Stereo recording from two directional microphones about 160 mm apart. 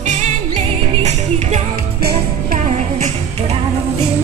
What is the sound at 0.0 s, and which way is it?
Music, 45° right (ahead or behind).